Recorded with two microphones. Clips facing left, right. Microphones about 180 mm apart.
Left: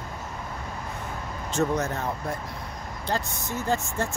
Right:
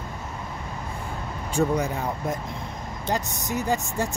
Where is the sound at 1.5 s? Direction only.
10° right (ahead or behind).